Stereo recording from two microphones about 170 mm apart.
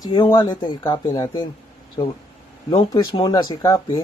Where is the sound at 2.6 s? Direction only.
25° left (ahead or behind).